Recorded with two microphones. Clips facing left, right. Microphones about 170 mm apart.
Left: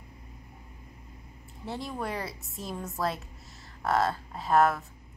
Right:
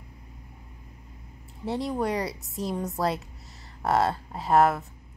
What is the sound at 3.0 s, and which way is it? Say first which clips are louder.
A woman's voice: right 1 dB; 30° right (ahead or behind).